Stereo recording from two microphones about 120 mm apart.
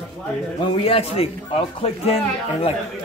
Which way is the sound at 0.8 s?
55° left (ahead or behind).